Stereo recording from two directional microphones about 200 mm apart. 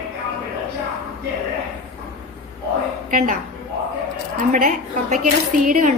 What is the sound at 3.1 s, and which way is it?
Speech, 40° right (ahead or behind).